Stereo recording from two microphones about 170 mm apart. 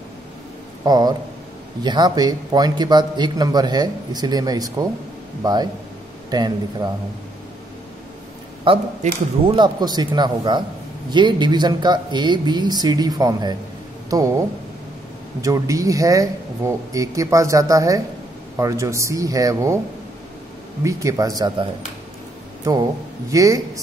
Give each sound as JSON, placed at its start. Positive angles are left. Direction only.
{"t": 0.8, "sound": "speech", "side_deg": -25}
{"t": 8.6, "sound": "speech", "side_deg": -30}
{"t": 15.4, "sound": "speech", "side_deg": -20}
{"t": 20.8, "sound": "speech", "side_deg": -20}